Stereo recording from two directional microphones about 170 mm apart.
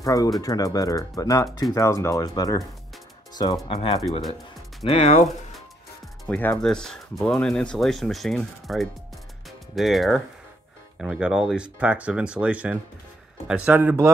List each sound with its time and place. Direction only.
0.0 s speech: 20° left (ahead or behind)
3.6 s speech: 30° left (ahead or behind)
6.2 s speech: 5° left (ahead or behind); by 14.1 s 15° right (ahead or behind)